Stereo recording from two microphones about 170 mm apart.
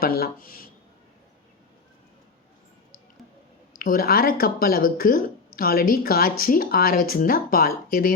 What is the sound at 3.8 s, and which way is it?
Speech, 60° left (ahead or behind).